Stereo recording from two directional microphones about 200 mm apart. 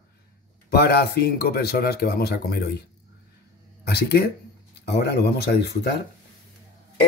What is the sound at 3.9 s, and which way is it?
Speech, 55° left (ahead or behind).